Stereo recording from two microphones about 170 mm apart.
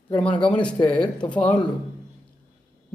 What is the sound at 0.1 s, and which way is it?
Speech, 5° left (ahead or behind).